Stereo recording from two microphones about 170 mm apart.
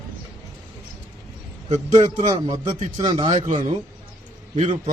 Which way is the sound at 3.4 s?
45° right (ahead or behind).